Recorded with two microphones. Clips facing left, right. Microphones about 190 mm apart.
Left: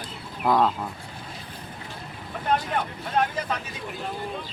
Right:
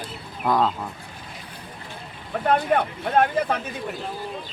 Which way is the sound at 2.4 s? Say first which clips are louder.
Right 5 dB; 60° right (ahead or behind).